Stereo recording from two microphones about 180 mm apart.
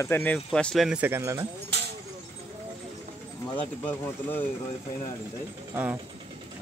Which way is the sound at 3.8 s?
10° left (ahead or behind).